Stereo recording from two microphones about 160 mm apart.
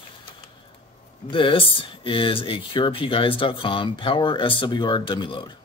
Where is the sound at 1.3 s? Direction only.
35° left (ahead or behind).